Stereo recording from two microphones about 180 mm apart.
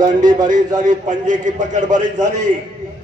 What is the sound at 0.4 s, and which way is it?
A man's voice, 45° right (ahead or behind).